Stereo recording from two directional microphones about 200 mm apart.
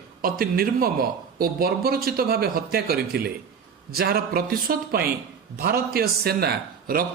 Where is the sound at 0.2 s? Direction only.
45° right (ahead or behind).